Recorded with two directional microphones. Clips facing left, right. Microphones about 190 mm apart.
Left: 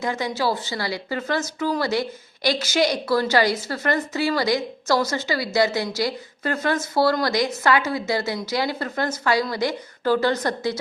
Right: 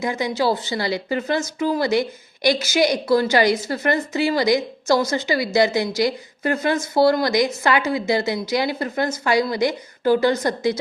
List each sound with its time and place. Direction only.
0.0 s speech: 15° right (ahead or behind)